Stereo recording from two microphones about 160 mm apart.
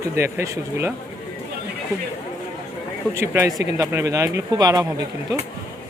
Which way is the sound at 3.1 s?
15° right (ahead or behind).